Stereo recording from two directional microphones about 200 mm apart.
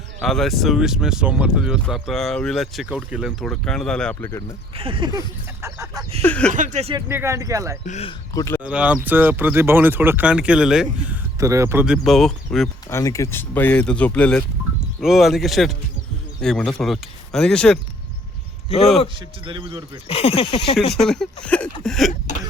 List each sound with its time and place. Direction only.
0.2 s speech: centre (ahead or behind)
4.7 s a man's voice: 25° right (ahead or behind)
5.6 s chicken: 15° right (ahead or behind)
6.2 s speech: 5° left (ahead or behind)
6.5 s speech: 40° right (ahead or behind)
7.1 s speech: 10° right (ahead or behind)
7.9 s a man's voice: 35° left (ahead or behind)
8.3 s speech: 15° left (ahead or behind)
8.6 s speech: 5° right (ahead or behind)
12.9 s speech: 15° left (ahead or behind)
18.7 s a man's voice: 30° left (ahead or behind)
19.0 s a man's voice: 25° right (ahead or behind)
20.1 s speech: 30° left (ahead or behind)
20.9 s speech: centre (ahead or behind)